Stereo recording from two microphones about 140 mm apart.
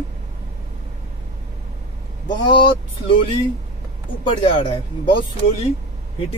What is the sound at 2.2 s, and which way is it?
Speech, 35° left (ahead or behind).